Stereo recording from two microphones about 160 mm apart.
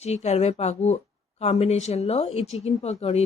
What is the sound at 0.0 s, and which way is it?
A woman's voice, 40° left (ahead or behind).